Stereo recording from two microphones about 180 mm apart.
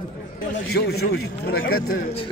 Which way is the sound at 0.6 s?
65° left (ahead or behind).